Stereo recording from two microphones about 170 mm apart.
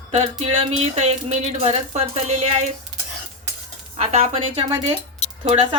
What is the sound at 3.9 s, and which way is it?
Speech, 40° right (ahead or behind).